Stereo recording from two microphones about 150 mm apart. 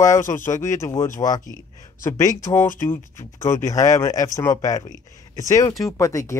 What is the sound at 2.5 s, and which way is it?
Speech, 60° left (ahead or behind).